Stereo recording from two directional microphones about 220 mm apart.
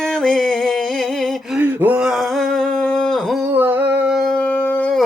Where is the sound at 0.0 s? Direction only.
Centre (ahead or behind).